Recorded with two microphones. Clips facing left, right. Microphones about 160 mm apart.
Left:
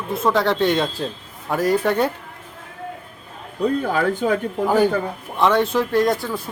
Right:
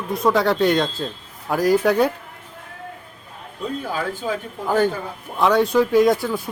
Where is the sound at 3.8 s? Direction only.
60° left (ahead or behind).